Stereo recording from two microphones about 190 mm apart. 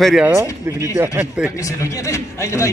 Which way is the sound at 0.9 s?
10° right (ahead or behind).